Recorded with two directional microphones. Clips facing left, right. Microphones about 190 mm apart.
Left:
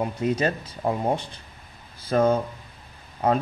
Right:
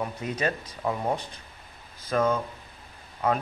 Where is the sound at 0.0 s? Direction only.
30° left (ahead or behind).